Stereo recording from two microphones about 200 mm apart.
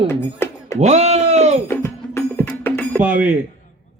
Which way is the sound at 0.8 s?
35° right (ahead or behind).